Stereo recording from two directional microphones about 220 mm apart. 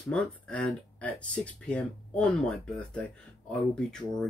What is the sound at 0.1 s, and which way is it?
Speech, 5° left (ahead or behind).